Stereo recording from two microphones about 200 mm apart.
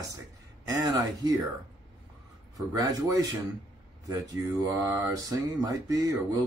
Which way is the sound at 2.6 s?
15° right (ahead or behind).